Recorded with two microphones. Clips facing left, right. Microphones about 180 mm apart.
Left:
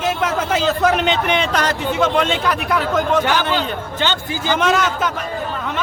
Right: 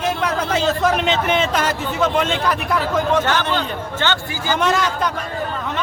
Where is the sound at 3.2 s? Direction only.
10° left (ahead or behind).